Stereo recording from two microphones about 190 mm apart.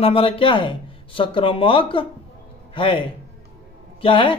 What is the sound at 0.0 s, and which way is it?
A man's voice, 30° left (ahead or behind).